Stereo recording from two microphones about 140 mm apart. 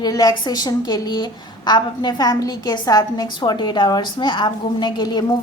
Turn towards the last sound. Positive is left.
turn(degrees=30)  # may be behind; listen again after turning